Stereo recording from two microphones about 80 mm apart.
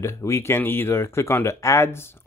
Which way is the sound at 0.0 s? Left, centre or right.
Left.